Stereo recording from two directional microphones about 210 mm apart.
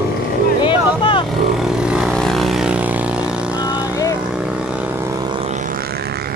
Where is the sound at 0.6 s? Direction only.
25° left (ahead or behind).